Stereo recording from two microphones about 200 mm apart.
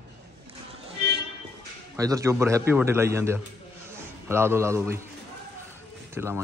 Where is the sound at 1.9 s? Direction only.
15° right (ahead or behind).